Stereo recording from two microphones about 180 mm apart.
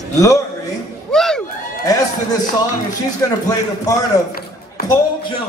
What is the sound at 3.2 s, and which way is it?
A man's voice, 20° left (ahead or behind).